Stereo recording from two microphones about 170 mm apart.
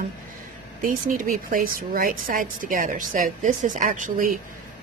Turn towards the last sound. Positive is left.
turn(degrees=-50)  # may be behind; listen again after turning